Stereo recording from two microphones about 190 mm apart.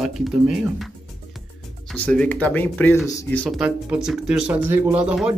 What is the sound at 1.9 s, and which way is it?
Speech, 5° left (ahead or behind).